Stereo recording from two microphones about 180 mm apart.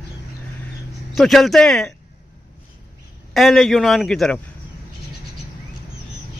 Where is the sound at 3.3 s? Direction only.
Centre (ahead or behind).